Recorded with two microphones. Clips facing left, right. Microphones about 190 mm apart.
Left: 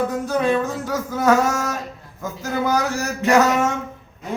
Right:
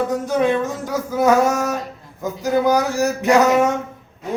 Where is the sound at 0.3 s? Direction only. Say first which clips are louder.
Right 2 dB; 20° right (ahead or behind).